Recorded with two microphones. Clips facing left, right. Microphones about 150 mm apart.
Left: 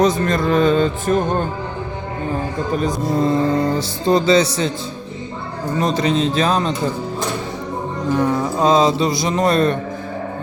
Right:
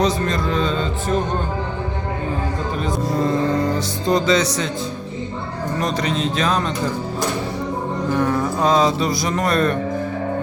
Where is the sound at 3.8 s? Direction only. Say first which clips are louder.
Left 2 dB; 30° left (ahead or behind).